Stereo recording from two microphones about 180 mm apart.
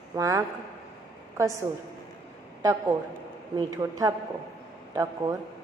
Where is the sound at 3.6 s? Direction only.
20° right (ahead or behind).